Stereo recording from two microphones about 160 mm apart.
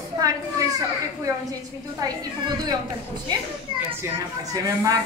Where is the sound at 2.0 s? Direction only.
25° right (ahead or behind).